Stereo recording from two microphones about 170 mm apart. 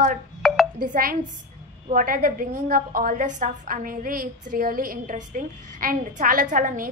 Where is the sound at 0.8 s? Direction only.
55° right (ahead or behind).